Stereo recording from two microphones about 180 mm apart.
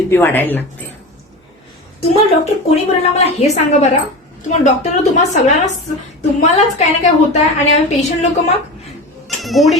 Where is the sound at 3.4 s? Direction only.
35° left (ahead or behind).